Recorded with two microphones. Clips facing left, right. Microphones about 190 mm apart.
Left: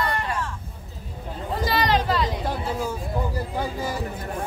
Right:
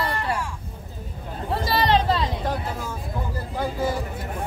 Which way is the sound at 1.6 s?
30° right (ahead or behind).